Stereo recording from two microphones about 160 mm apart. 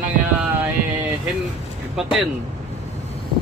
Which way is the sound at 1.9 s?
Centre (ahead or behind).